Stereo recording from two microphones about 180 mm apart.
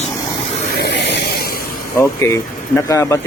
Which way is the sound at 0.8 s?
70° left (ahead or behind).